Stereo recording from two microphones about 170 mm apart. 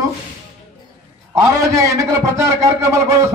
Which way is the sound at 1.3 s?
20° right (ahead or behind).